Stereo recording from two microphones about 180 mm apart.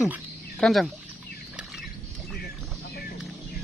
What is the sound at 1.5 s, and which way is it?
Bird, centre (ahead or behind).